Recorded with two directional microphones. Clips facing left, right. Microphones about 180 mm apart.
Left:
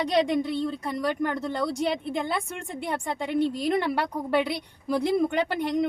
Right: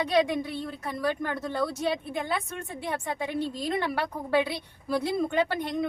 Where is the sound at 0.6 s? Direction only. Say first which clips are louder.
Left 3 dB; 15° left (ahead or behind).